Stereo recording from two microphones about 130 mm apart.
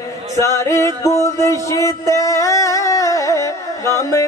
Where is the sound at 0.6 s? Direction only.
25° left (ahead or behind).